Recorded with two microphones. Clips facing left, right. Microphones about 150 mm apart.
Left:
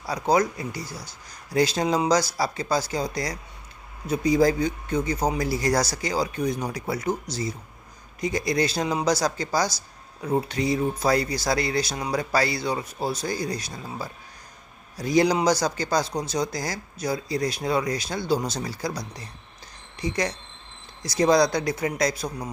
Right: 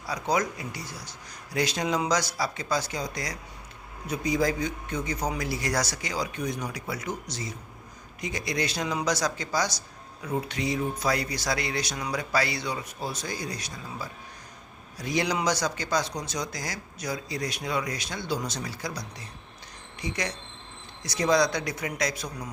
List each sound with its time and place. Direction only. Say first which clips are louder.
0.1 s speech: left 5 dB; 35° left (ahead or behind)
8.2 s speech: left 6 dB; 35° left (ahead or behind)